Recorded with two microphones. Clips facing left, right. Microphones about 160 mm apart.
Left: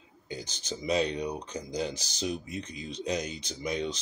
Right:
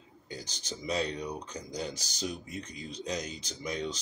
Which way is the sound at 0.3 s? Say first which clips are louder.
Left 4 dB; 20° left (ahead or behind).